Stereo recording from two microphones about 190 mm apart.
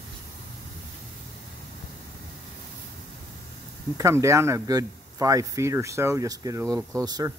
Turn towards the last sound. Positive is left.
turn(degrees=-20)  # may be behind; listen again after turning